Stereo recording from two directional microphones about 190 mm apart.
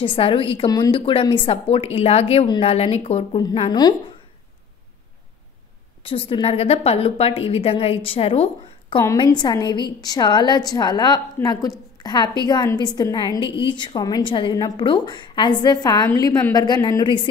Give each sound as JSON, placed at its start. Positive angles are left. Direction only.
{"t": 0.0, "sound": "a woman's voice", "side_deg": 30}
{"t": 2.4, "sound": "a woman's voice", "side_deg": 20}
{"t": 2.7, "sound": "a woman's voice", "side_deg": 35}
{"t": 6.0, "sound": "a woman's voice", "side_deg": 30}